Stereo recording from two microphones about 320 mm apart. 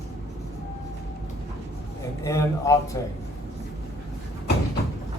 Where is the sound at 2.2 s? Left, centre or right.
Centre.